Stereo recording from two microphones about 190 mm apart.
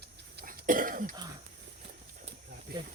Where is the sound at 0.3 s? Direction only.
45° right (ahead or behind).